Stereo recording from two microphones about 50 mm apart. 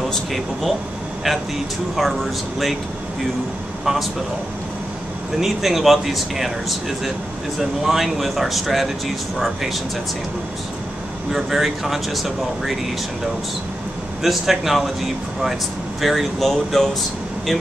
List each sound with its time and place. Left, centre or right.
0.0 s speech: centre
2.0 s speech: centre
5.4 s speech: centre
7.8 s speech: centre
11.3 s speech: centre
14.2 s speech: centre